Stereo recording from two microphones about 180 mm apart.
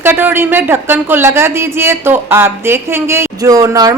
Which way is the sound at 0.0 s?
10° right (ahead or behind).